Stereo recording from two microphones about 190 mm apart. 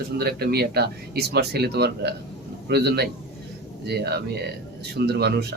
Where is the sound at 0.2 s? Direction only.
55° right (ahead or behind).